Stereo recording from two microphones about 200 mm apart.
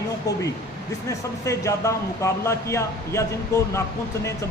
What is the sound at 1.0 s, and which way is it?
A man's voice, 15° left (ahead or behind).